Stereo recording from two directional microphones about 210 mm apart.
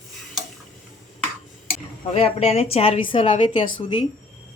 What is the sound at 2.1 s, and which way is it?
A woman's voice, 30° left (ahead or behind).